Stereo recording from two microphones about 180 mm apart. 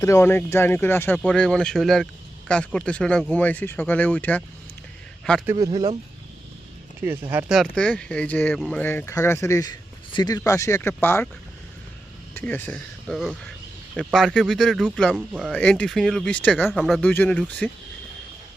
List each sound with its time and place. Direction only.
0.0 s speech: 15° left (ahead or behind)
5.5 s speech: 20° right (ahead or behind)
7.0 s speech: 10° right (ahead or behind); by 11.3 s 10° left (ahead or behind)
12.3 s speech: 10° left (ahead or behind); by 15.5 s 5° right (ahead or behind)
15.5 s speech: 5° left (ahead or behind)
16.6 s speech: centre (ahead or behind)
17.0 s speech: 10° left (ahead or behind)